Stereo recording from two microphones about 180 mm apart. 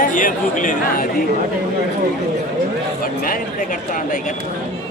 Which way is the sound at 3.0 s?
50° left (ahead or behind).